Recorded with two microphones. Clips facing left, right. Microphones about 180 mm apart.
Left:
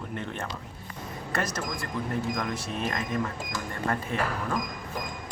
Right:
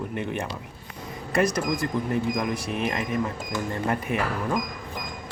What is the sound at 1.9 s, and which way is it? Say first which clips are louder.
Speech: right 4 dB; 15° right (ahead or behind).